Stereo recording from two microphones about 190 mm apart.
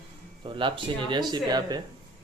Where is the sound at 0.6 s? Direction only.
25° right (ahead or behind).